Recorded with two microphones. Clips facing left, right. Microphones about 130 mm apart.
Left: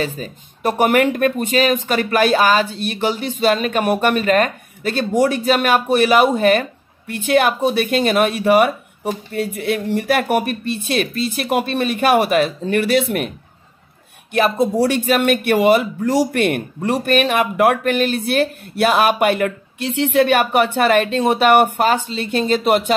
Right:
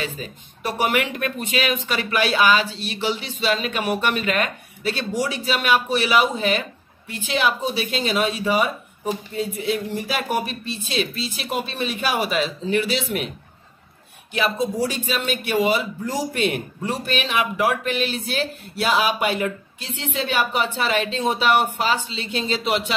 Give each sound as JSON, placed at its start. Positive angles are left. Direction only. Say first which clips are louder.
{"t": 0.0, "sound": "speech", "louder": "left 6 dB", "side_deg": 45}
{"t": 14.3, "sound": "speech", "louder": "left 6 dB", "side_deg": 55}